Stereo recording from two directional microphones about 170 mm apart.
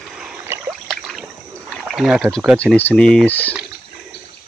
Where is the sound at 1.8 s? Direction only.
5° right (ahead or behind).